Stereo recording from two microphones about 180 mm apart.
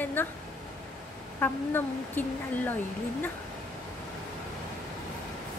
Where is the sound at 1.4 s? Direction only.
10° left (ahead or behind).